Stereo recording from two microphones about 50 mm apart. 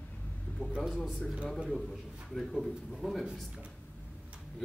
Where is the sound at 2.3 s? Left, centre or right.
Centre.